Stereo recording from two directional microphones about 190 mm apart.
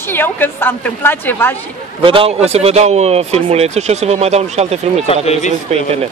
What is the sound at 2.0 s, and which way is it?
Speech, 30° right (ahead or behind).